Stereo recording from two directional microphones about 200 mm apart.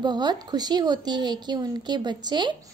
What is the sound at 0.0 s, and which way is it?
A woman's voice, 20° right (ahead or behind).